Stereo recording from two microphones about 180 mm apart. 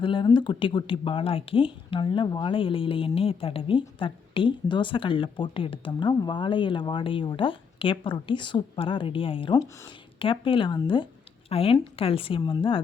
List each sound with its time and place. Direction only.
0.0 s speech: 25° left (ahead or behind)